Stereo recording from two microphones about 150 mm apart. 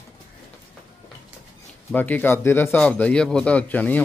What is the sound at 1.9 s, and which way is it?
A man's voice, 10° left (ahead or behind).